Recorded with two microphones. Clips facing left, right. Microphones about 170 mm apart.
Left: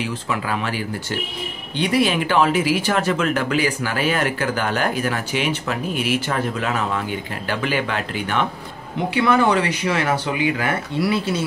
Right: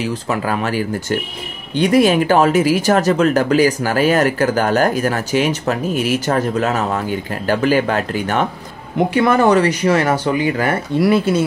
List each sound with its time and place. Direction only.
0.0 s speech: 45° right (ahead or behind)